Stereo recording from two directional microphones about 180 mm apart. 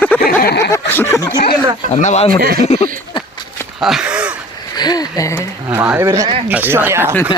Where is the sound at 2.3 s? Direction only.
60° right (ahead or behind).